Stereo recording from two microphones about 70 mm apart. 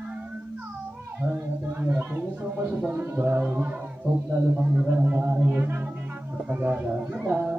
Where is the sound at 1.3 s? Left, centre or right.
Right.